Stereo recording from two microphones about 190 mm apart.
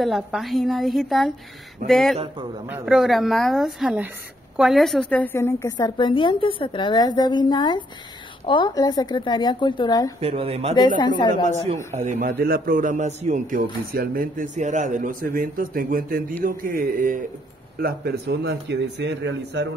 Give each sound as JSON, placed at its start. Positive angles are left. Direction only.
{"t": 0.0, "sound": "a woman's voice", "side_deg": 0}
{"t": 10.2, "sound": "a man's voice", "side_deg": -30}
{"t": 11.0, "sound": "a woman's voice", "side_deg": 25}
{"t": 11.4, "sound": "a man's voice", "side_deg": -35}
{"t": 12.4, "sound": "speech", "side_deg": -50}